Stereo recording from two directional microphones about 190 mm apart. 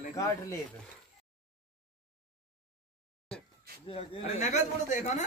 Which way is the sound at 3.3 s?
5° left (ahead or behind).